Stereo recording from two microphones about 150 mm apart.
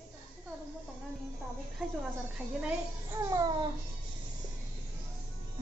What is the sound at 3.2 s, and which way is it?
Babbling, 25° right (ahead or behind).